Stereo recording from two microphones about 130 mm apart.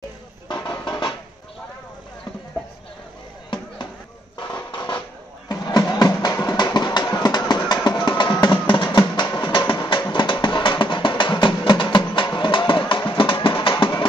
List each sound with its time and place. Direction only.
0.5 s music: 35° left (ahead or behind)
4.4 s a sound: 35° left (ahead or behind)
5.5 s music: 30° left (ahead or behind)